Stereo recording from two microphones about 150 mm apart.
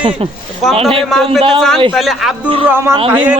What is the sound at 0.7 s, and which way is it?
Speech, 40° right (ahead or behind).